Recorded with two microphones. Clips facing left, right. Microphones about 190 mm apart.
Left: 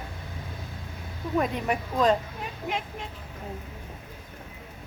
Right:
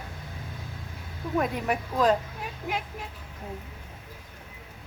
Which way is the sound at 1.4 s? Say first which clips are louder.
Even; centre (ahead or behind).